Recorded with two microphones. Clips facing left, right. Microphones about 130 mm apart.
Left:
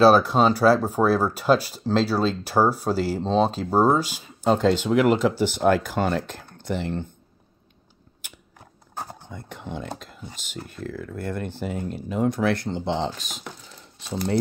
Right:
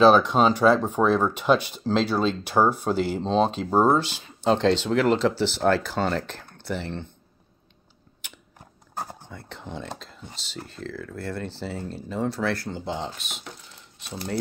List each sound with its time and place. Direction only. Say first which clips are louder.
0.0 s speech: left 1 dB; 5° left (ahead or behind)
9.3 s speech: left 2 dB; 15° left (ahead or behind)
13.2 s speech: left 2 dB; 40° left (ahead or behind)